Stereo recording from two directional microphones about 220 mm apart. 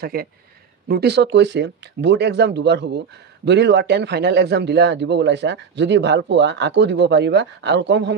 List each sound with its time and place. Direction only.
0.0 s a man's voice: 45° right (ahead or behind)